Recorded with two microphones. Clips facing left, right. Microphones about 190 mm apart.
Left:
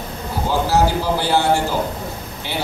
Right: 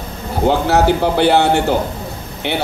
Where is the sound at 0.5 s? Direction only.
65° right (ahead or behind).